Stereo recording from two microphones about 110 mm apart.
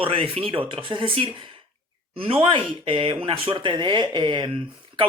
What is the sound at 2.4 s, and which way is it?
Speech, 50° right (ahead or behind).